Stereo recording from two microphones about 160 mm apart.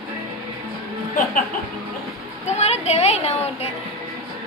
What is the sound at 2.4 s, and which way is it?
Speech, 45° left (ahead or behind).